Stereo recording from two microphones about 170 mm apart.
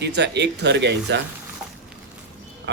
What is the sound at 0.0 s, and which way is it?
A man's voice, 85° right.